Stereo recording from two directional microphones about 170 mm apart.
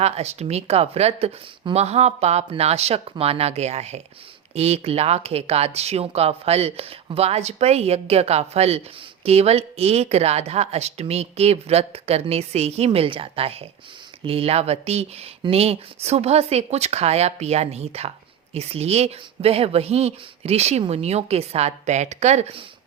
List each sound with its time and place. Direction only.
0.0 s a woman's voice: 40° right (ahead or behind)